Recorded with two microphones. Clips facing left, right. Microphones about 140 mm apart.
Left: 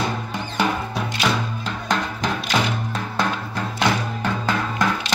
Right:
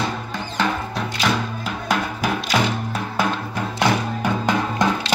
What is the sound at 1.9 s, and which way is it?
Music, 5° right (ahead or behind).